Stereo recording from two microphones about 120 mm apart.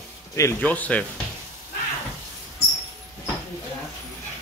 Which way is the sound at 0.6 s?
10° left (ahead or behind).